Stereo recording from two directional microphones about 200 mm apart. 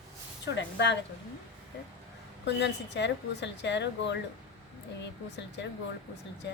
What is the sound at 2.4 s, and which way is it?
A woman's voice, 60° left (ahead or behind).